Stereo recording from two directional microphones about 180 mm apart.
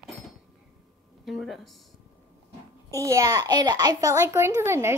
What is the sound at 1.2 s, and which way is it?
Speech, centre (ahead or behind).